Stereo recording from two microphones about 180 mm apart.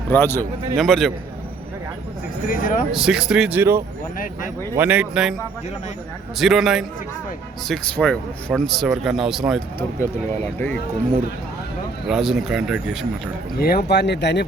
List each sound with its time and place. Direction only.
0.1 s speech: 15° left (ahead or behind)
0.8 s speech: centre (ahead or behind)
2.5 s speech: 50° left (ahead or behind)
2.9 s speech: 5° right (ahead or behind)
4.2 s speech: 45° left (ahead or behind)
4.7 s speech: 10° right (ahead or behind)
6.4 s speech: centre (ahead or behind)
12.0 s speech: centre (ahead or behind)
13.6 s speech: 60° left (ahead or behind)